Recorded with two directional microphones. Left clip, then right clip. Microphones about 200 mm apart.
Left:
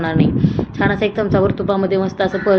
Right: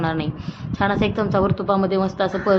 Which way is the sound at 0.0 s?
5° left (ahead or behind).